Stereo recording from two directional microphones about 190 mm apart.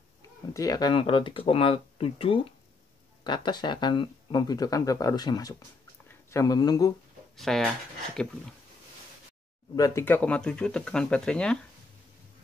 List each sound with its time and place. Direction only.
0.5 s speech: 20° left (ahead or behind)
7.3 s speech: centre (ahead or behind)
9.8 s speech: 15° left (ahead or behind)